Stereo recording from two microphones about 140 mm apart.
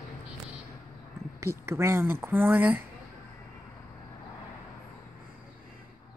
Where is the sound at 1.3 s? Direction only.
20° right (ahead or behind).